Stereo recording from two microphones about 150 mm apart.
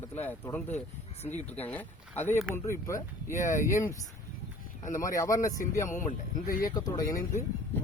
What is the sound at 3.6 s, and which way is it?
Speech, 20° left (ahead or behind).